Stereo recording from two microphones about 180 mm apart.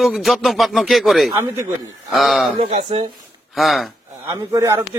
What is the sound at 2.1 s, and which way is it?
Speech, centre (ahead or behind).